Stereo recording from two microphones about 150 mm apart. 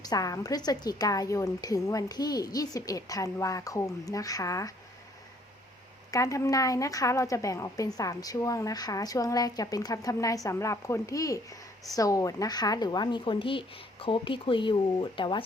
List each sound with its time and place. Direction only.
0.0 s a woman's voice: 25° left (ahead or behind)
6.1 s a woman's voice: 20° left (ahead or behind)